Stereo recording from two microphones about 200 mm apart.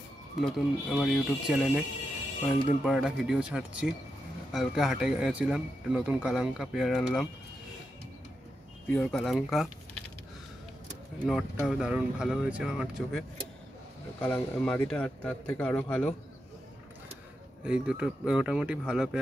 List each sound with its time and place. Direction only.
0.4 s speech: centre (ahead or behind)
8.8 s speech: 5° left (ahead or behind)
11.2 s speech: centre (ahead or behind)
14.2 s speech: 5° left (ahead or behind)
17.6 s speech: 5° right (ahead or behind)